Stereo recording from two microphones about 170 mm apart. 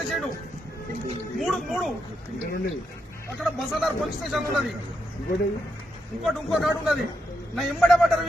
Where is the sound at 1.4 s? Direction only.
Centre (ahead or behind).